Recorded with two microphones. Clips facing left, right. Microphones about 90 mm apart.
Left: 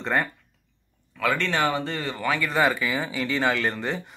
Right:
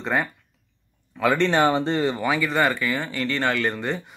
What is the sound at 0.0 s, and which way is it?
Speech, 5° right (ahead or behind).